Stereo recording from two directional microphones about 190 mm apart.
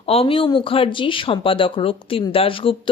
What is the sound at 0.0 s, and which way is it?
Speech, 30° left (ahead or behind).